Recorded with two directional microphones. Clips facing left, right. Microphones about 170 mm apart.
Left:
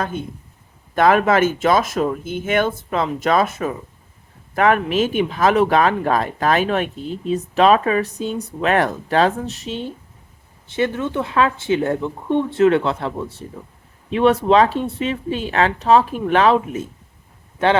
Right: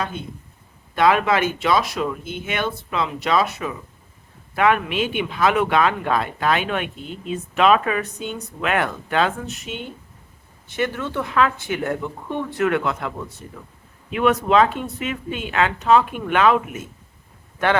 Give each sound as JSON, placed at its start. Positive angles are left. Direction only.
{"t": 0.0, "sound": "speech", "side_deg": 45}